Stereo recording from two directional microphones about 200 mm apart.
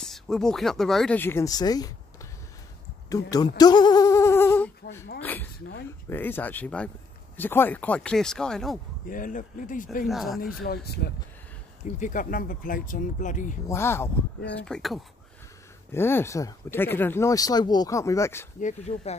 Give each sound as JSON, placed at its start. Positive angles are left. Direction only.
{"t": 0.0, "sound": "speech", "side_deg": 0}
{"t": 3.1, "sound": "speech", "side_deg": 20}
{"t": 9.0, "sound": "speech", "side_deg": 40}
{"t": 10.0, "sound": "speech", "side_deg": 0}
{"t": 10.6, "sound": "speech", "side_deg": 50}
{"t": 11.8, "sound": "speech", "side_deg": 40}
{"t": 13.7, "sound": "speech", "side_deg": 10}
{"t": 18.6, "sound": "speech", "side_deg": 35}